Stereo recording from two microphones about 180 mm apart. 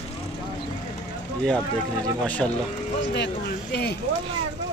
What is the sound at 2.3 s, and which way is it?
Speech, 10° left (ahead or behind).